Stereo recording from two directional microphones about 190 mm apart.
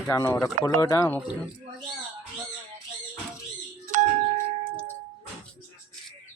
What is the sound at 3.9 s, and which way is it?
Doorbell, 40° right (ahead or behind).